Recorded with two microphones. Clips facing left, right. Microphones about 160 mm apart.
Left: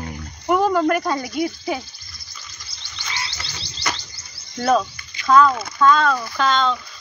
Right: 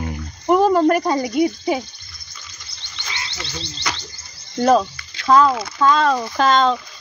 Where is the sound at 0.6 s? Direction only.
30° right (ahead or behind).